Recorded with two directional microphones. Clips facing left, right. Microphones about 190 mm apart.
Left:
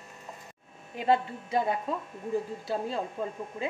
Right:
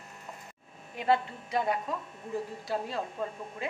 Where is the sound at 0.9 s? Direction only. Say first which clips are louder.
Left 2 dB; 25° left (ahead or behind).